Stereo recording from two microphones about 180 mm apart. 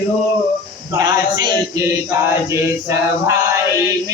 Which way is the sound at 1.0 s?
20° right (ahead or behind).